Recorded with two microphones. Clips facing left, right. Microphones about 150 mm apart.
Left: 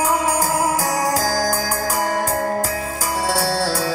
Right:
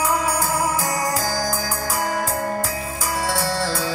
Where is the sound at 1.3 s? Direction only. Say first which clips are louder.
Left 4 dB; 40° left (ahead or behind).